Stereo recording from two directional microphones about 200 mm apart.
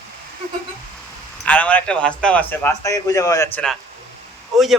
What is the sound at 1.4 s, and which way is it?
A man's voice, 5° left (ahead or behind).